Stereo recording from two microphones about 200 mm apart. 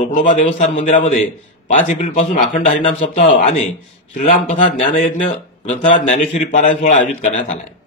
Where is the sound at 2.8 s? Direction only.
30° left (ahead or behind).